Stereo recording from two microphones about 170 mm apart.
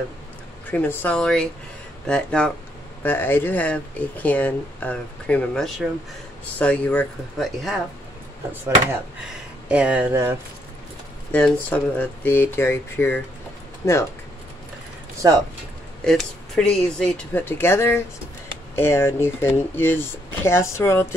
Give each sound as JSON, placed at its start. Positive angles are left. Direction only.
{"t": 0.7, "sound": "speech", "side_deg": 10}
{"t": 9.7, "sound": "speech", "side_deg": -5}
{"t": 11.3, "sound": "speech", "side_deg": 10}
{"t": 16.0, "sound": "speech", "side_deg": 5}